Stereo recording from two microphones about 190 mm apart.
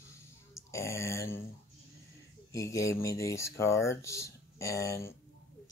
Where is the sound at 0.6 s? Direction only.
15° left (ahead or behind).